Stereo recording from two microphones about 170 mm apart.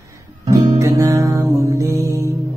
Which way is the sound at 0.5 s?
20° right (ahead or behind).